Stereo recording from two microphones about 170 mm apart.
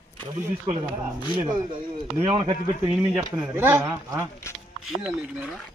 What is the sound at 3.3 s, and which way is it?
Speech, 10° right (ahead or behind).